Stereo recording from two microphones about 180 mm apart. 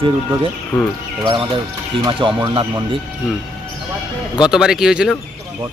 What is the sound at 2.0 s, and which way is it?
Speech, 25° right (ahead or behind).